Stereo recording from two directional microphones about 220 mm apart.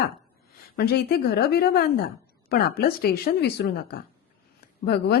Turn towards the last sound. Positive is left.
turn(degrees=45)  # may be behind; listen again after turning